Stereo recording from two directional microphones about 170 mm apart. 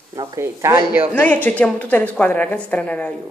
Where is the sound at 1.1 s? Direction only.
10° left (ahead or behind).